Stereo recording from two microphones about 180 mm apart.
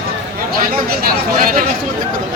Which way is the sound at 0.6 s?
55° right (ahead or behind).